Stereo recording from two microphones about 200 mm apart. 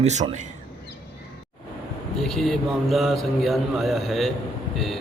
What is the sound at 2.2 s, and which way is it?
A man's voice, centre (ahead or behind).